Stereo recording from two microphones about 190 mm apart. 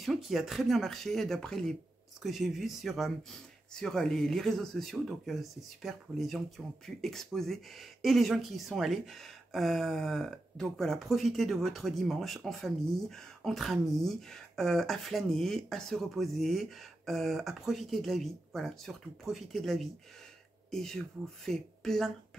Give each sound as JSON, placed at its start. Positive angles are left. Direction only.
{"t": 0.0, "sound": "speech", "side_deg": 0}